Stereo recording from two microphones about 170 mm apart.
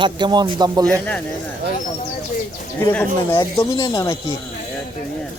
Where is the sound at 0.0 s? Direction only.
25° right (ahead or behind).